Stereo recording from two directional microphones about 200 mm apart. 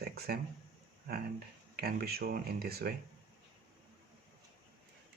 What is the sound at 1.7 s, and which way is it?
Speech, 50° right (ahead or behind).